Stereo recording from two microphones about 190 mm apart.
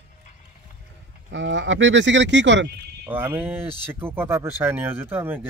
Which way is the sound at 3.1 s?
10° right (ahead or behind).